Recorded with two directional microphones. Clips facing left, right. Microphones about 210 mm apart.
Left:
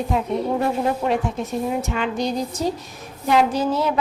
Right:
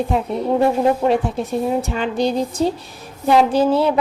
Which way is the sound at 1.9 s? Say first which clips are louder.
Right 4 dB; 30° right (ahead or behind).